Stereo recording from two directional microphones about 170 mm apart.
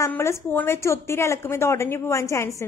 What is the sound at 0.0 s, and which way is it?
Speech, 15° left (ahead or behind).